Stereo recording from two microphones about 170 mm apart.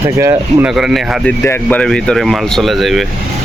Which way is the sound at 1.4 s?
10° left (ahead or behind).